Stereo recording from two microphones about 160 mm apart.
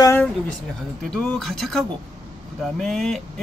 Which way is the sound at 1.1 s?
Centre (ahead or behind).